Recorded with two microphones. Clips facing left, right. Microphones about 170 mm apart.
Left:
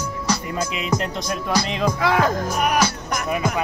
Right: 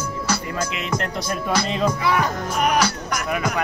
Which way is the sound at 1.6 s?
90° left.